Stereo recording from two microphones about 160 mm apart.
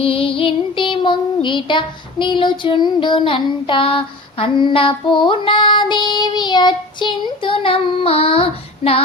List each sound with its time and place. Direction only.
0.0 s child singing: 35° left (ahead or behind)